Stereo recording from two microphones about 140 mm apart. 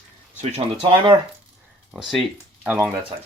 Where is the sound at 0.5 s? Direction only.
40° right (ahead or behind).